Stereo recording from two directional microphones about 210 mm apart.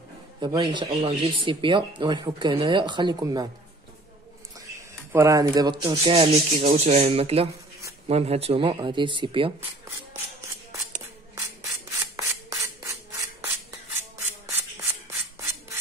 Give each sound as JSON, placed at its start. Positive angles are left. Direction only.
{"t": 0.4, "sound": "speech", "side_deg": -20}
{"t": 4.6, "sound": "speech", "side_deg": -15}
{"t": 11.3, "sound": "filing", "side_deg": -15}
{"t": 15.3, "sound": "rub", "side_deg": -10}